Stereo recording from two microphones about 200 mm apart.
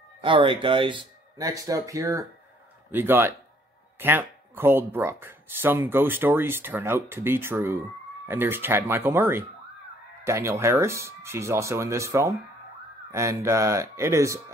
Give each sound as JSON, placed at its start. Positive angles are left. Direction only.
{"t": 0.2, "sound": "speech", "side_deg": -25}